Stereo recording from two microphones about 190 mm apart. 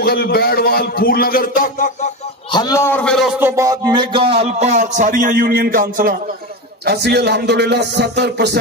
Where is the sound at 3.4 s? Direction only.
15° right (ahead or behind); by 6.2 s 45° right (ahead or behind).